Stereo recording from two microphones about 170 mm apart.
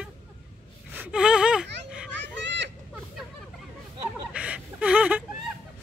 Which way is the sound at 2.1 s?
90° right.